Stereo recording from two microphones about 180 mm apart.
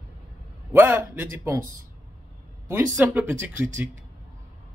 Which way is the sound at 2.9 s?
10° right (ahead or behind).